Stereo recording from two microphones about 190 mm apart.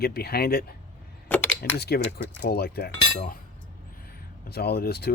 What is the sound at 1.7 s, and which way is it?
Speech, 60° left (ahead or behind).